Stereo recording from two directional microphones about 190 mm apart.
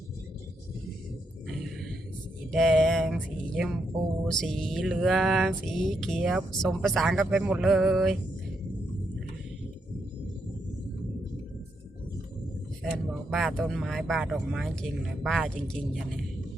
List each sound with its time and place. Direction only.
2.5 s mantra: centre (ahead or behind)
3.5 s a woman's voice: centre (ahead or behind)
12.8 s speech: 5° left (ahead or behind)